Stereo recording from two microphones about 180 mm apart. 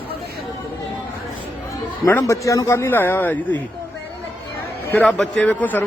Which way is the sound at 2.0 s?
15° left (ahead or behind).